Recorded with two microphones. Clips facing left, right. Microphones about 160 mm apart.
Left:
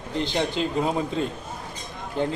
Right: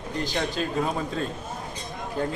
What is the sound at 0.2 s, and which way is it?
A man's voice, 20° left (ahead or behind).